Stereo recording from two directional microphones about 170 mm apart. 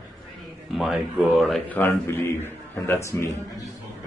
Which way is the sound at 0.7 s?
Centre (ahead or behind).